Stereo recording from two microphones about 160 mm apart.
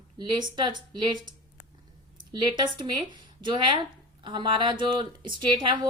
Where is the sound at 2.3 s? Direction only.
30° right (ahead or behind).